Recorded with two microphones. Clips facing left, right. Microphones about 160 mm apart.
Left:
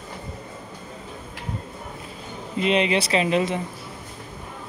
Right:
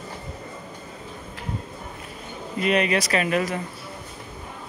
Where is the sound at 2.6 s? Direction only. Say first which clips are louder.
Left 1 dB; 25° left (ahead or behind).